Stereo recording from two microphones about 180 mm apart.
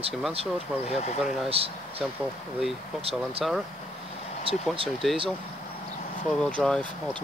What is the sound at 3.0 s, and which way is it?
Speech, 35° right (ahead or behind).